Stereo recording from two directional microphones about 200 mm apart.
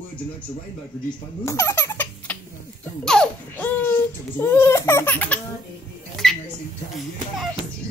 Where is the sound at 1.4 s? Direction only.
15° left (ahead or behind).